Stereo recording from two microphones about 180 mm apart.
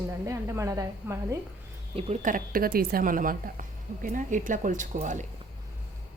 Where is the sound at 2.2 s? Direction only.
50° right (ahead or behind).